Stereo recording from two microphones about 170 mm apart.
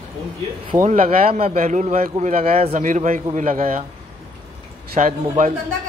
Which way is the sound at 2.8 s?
50° right (ahead or behind).